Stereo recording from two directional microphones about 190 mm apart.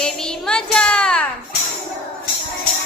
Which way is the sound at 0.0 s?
5° left (ahead or behind).